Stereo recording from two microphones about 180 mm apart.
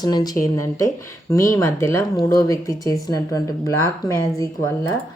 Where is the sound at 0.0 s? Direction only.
20° left (ahead or behind).